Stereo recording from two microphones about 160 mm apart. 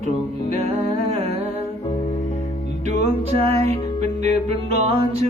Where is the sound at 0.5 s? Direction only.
40° right (ahead or behind).